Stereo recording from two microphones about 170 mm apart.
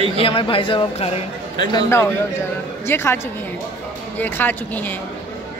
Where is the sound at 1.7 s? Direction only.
20° left (ahead or behind).